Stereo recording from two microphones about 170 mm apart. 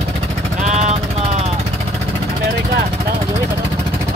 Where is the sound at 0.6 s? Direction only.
45° right (ahead or behind).